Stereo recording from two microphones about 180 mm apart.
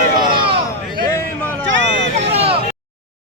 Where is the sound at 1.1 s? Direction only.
10° left (ahead or behind).